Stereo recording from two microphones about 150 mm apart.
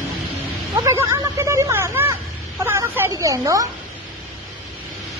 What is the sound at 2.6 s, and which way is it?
Speech, 15° right (ahead or behind).